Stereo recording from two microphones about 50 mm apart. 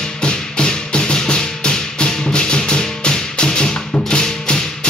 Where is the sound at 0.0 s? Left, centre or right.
Centre.